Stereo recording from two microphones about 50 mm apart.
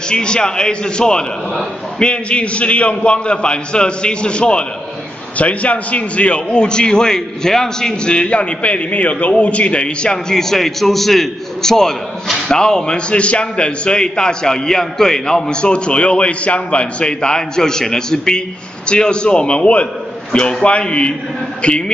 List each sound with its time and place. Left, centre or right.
0.1 s a man's voice: centre
10.1 s a man's voice: centre